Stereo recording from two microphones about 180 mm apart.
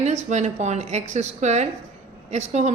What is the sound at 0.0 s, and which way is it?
A woman's voice, 40° right (ahead or behind).